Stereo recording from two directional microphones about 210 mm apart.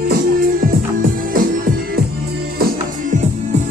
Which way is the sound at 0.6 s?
45° right (ahead or behind).